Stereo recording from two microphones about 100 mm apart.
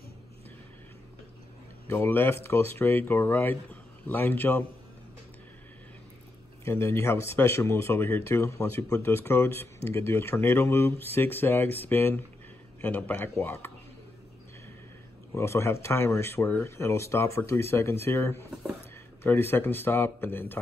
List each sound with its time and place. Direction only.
1.9 s speech: 20° left (ahead or behind)
6.6 s speech: 25° left (ahead or behind)
15.3 s speech: 25° left (ahead or behind)